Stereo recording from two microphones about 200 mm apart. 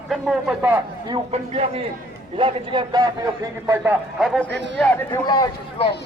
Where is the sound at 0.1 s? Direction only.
5° right (ahead or behind).